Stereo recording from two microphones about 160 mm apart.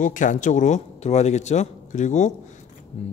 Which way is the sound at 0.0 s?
55° left (ahead or behind).